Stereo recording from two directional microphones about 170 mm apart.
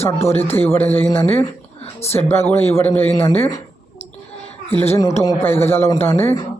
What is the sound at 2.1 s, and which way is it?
A man's voice, 20° left (ahead or behind).